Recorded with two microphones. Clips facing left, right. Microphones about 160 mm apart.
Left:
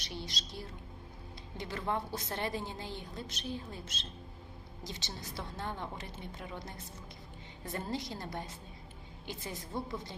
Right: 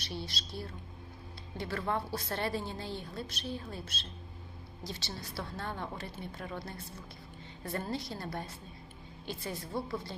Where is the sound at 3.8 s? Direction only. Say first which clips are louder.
Right 1 dB; 60° right (ahead or behind).